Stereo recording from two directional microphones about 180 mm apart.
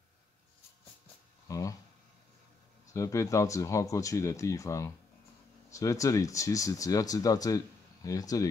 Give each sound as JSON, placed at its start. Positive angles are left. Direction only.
{"t": 1.5, "sound": "speech", "side_deg": 20}
{"t": 2.9, "sound": "speech", "side_deg": 15}